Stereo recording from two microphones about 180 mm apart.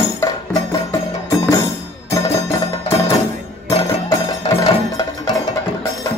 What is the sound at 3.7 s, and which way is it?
Music, 20° left (ahead or behind).